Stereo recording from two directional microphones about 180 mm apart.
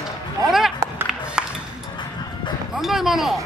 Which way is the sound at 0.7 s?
10° right (ahead or behind).